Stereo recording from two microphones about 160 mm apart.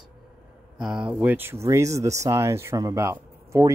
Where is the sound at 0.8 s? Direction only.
5° right (ahead or behind).